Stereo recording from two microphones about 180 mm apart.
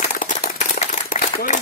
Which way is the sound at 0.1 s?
45° left (ahead or behind).